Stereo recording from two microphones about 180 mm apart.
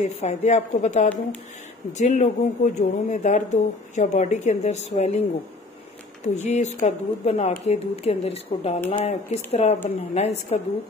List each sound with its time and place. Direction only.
0.0 s speech: 40° left (ahead or behind)
6.2 s speech: 40° left (ahead or behind)